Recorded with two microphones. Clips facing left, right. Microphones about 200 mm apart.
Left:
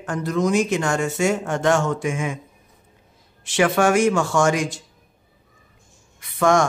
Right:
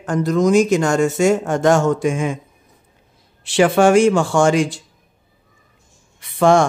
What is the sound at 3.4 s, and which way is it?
Speech, 30° right (ahead or behind).